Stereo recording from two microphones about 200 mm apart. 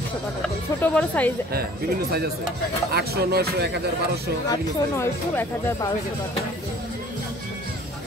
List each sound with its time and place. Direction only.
0.8 s speech: 10° left (ahead or behind)
2.9 s speech: 50° right (ahead or behind)
4.5 s speech: 10° left (ahead or behind)